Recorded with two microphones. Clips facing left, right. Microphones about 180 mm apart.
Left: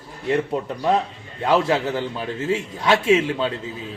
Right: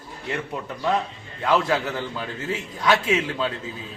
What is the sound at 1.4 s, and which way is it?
Speech, 25° left (ahead or behind).